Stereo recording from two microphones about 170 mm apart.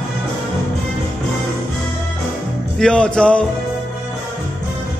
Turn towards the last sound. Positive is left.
turn(degrees=5)  # may be behind; listen again after turning